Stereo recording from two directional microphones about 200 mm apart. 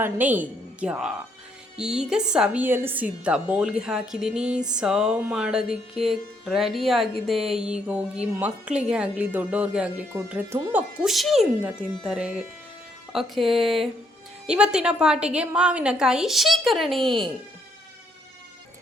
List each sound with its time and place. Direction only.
0.0 s a woman's voice: 10° right (ahead or behind)